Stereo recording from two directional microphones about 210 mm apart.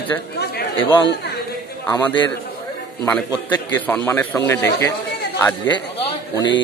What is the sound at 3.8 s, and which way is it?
Speech, 5° left (ahead or behind).